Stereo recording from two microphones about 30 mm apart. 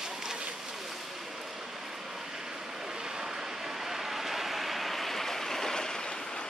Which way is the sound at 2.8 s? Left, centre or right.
Centre.